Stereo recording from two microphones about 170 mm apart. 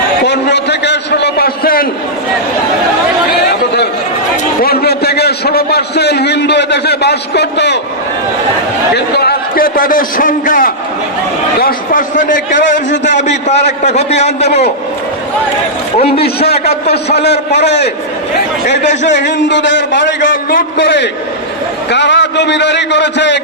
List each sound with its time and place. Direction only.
0.2 s a sound: 90° left; by 1.9 s 60° left (ahead or behind)
4.6 s a man's voice: 65° left (ahead or behind); by 7.8 s 85° left
8.9 s a man's voice: 70° left (ahead or behind); by 12.8 s 50° left (ahead or behind)
12.9 s a man's voice: 90° left
13.2 s a man's voice: 40° left (ahead or behind)
16.2 s a man's voice: 70° left (ahead or behind)
18.8 s a man's voice: 45° left (ahead or behind)
19.1 s a man's voice: 90° left
20.2 s a man's voice: 75° left (ahead or behind); by 23.4 s 90° left